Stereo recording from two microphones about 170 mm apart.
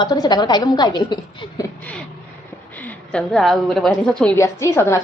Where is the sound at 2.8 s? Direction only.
5° left (ahead or behind).